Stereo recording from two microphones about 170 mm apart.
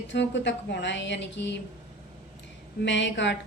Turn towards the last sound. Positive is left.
turn(degrees=90)